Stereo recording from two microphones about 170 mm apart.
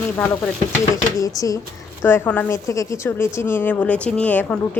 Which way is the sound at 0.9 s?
20° left (ahead or behind).